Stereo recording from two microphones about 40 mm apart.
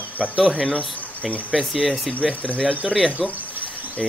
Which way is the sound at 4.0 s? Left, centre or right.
Centre.